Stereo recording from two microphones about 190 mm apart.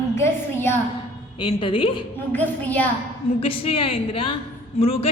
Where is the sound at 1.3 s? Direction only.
25° left (ahead or behind).